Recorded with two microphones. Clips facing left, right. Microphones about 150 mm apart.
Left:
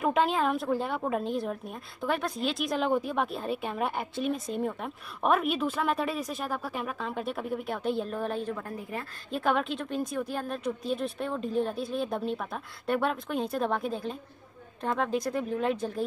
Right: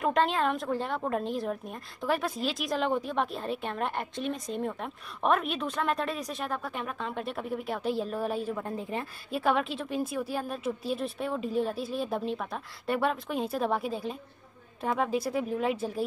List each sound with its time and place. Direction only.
0.0 s a woman's voice: 5° left (ahead or behind)
8.6 s a woman's voice: 20° right (ahead or behind)
9.3 s a woman's voice: centre (ahead or behind)